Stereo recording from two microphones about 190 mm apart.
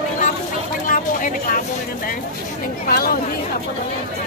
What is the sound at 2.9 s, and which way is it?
Speech, 50° left (ahead or behind).